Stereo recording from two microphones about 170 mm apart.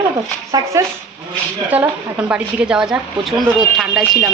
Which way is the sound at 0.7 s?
15° right (ahead or behind).